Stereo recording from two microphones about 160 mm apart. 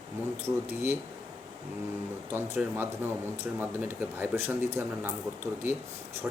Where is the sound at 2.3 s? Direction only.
15° right (ahead or behind).